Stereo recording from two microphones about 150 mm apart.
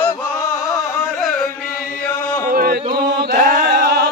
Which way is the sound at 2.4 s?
85° right.